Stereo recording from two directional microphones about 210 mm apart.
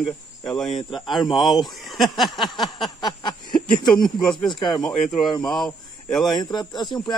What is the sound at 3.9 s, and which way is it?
Speech, 20° left (ahead or behind).